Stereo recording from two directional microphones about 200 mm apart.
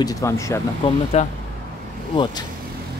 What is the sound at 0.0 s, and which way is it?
Speech, 15° left (ahead or behind).